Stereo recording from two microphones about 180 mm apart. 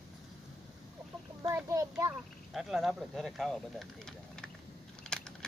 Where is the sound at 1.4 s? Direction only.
15° right (ahead or behind).